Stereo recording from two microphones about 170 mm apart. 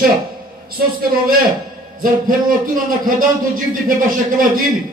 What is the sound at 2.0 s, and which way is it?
A man's voice, 55° right (ahead or behind).